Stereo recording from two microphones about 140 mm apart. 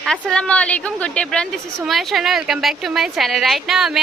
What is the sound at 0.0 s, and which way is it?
A woman's voice, 5° left (ahead or behind).